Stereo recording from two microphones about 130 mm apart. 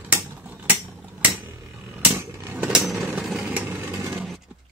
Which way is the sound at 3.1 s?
5° right (ahead or behind).